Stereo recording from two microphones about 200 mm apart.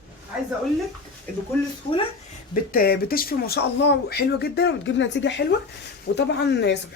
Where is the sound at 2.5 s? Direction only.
45° left (ahead or behind).